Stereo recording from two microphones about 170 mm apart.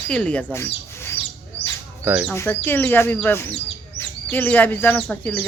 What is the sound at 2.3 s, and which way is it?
Speech, 15° left (ahead or behind).